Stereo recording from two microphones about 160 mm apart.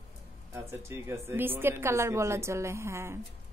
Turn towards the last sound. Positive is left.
turn(degrees=-15)  # may be behind; listen again after turning